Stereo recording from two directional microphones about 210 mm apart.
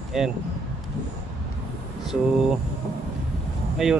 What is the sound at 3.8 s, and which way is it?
Speech, centre (ahead or behind).